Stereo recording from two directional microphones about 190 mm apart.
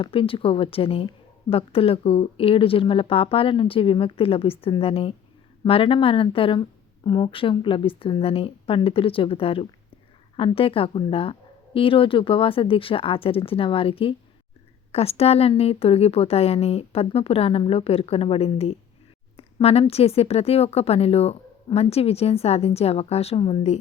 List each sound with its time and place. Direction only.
0.0 s a woman's voice: 30° left (ahead or behind)